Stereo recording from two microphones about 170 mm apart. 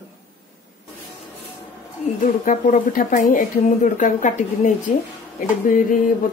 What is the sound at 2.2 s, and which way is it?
A woman's voice, 50° left (ahead or behind).